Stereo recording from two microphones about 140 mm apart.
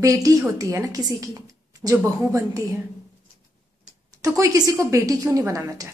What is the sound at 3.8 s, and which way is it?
A woman's voice, 25° right (ahead or behind).